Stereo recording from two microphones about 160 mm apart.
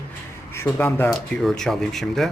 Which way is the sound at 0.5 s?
15° left (ahead or behind).